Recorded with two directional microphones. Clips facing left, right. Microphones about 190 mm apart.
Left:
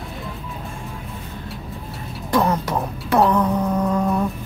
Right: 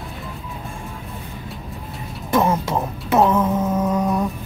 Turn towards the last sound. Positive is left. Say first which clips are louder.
# even
turn(degrees=0)  # may be behind; listen again after turning